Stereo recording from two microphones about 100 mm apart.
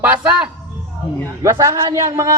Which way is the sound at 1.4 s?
30° right (ahead or behind).